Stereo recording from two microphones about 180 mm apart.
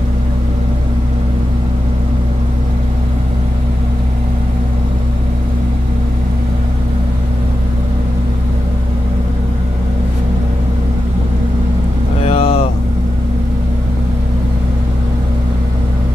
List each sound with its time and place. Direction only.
12.3 s vehicle: 30° left (ahead or behind)